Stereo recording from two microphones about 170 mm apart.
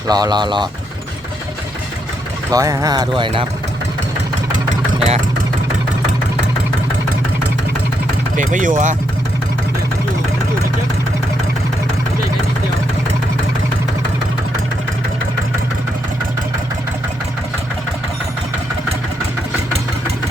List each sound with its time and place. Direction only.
0.1 s speech: 25° right (ahead or behind)
2.5 s speech: 20° right (ahead or behind)
4.9 s vehicle: 35° right (ahead or behind)
8.4 s speech: 50° right (ahead or behind)